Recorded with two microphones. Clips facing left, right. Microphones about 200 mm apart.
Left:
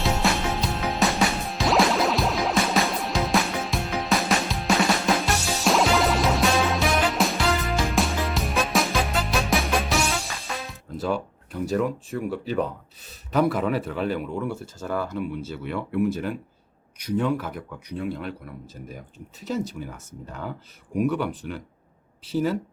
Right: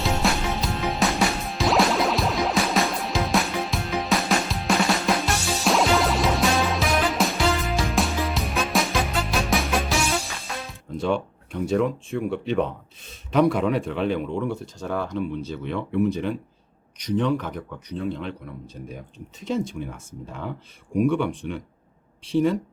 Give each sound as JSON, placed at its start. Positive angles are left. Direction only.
{"t": 0.0, "sound": "music", "side_deg": 0}
{"t": 13.3, "sound": "speech", "side_deg": 0}